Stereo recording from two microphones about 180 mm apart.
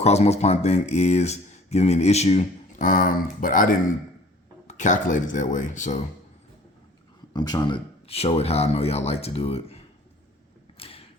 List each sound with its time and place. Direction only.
0.0 s speech: 35° left (ahead or behind)
4.7 s speech: 45° left (ahead or behind)
7.3 s speech: 25° left (ahead or behind)
10.8 s a sound: 30° left (ahead or behind)